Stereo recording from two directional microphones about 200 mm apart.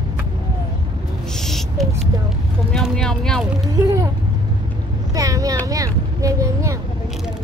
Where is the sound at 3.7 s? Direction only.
15° right (ahead or behind).